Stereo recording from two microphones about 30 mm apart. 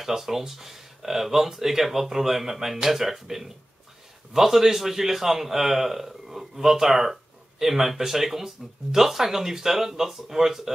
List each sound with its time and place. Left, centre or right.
0.0 s a man's voice: centre